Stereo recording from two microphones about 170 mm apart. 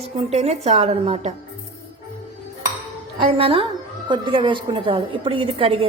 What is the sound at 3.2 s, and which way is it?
A woman's voice, 30° right (ahead or behind).